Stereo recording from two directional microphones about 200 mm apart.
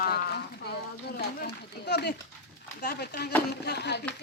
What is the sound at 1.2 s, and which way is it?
Speech, 55° left (ahead or behind).